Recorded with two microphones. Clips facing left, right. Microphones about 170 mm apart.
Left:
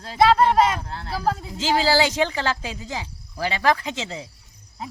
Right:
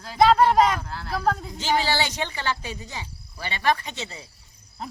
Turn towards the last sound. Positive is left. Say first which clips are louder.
# left 5 dB
turn(degrees=90)